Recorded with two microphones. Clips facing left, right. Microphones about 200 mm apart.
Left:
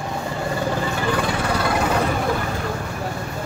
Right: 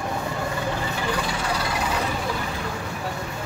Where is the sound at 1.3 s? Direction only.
55° left (ahead or behind).